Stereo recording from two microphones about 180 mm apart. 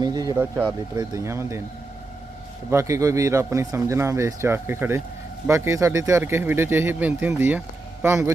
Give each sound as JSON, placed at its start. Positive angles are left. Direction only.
{"t": 0.0, "sound": "a man's voice", "side_deg": -20}
{"t": 2.6, "sound": "a man's voice", "side_deg": -15}